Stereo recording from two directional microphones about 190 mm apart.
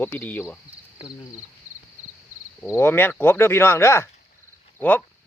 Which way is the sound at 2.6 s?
10° left (ahead or behind).